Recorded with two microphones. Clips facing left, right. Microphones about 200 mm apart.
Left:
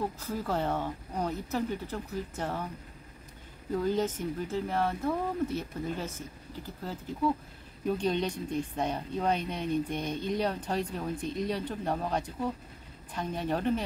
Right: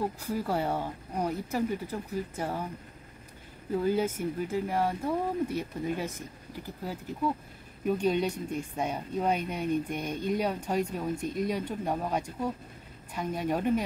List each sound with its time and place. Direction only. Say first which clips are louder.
0.0 s speech: right 2 dB; 10° right (ahead or behind)
3.7 s speech: right 1 dB; 10° right (ahead or behind)